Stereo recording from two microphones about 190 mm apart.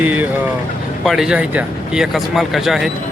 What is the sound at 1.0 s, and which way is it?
Speech, 5° right (ahead or behind).